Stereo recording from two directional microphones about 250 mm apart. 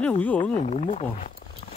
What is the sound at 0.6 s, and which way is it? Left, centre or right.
Speech, left.